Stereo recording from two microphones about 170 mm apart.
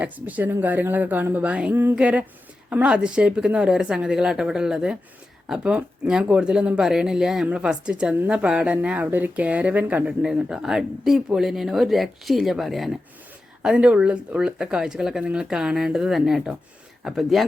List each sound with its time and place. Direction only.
0.0 s speech: 10° right (ahead or behind)